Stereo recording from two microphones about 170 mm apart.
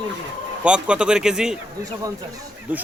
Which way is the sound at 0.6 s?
5° right (ahead or behind).